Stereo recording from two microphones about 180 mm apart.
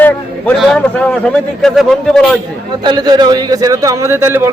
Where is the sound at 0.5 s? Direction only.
5° left (ahead or behind).